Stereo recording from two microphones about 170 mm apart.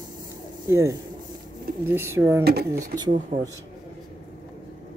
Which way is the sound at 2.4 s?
70° right (ahead or behind).